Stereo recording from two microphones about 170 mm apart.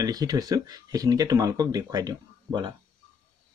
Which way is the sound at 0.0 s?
20° right (ahead or behind).